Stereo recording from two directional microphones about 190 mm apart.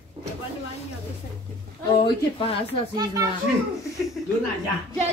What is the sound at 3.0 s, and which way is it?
Speech, 20° right (ahead or behind).